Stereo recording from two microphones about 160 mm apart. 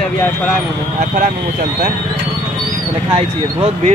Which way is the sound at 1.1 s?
55° right (ahead or behind).